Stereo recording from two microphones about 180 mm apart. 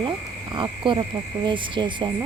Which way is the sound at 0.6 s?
25° right (ahead or behind).